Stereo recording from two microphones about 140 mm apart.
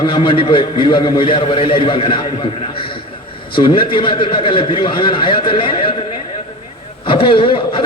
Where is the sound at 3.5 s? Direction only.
35° left (ahead or behind).